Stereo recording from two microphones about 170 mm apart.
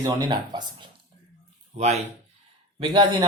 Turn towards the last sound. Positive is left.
turn(degrees=-30)  # may be behind; listen again after turning